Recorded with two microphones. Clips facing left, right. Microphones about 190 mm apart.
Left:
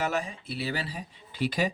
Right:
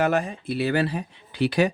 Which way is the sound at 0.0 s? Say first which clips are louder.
Right 7 dB; 55° right (ahead or behind).